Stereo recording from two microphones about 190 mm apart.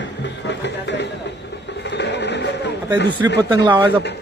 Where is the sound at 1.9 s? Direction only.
65° left (ahead or behind).